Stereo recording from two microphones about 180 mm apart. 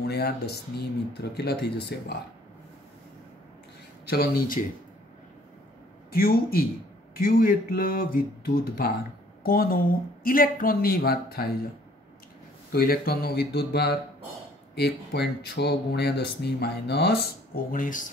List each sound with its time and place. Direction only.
0.0 s speech: 65° left (ahead or behind)
4.1 s speech: 60° left (ahead or behind)
6.1 s speech: 55° left (ahead or behind)
12.7 s speech: 55° left (ahead or behind)